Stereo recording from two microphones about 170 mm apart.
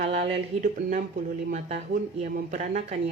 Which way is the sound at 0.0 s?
40° right (ahead or behind).